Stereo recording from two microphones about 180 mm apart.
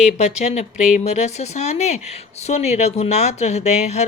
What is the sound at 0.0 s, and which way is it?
Speech, 40° left (ahead or behind).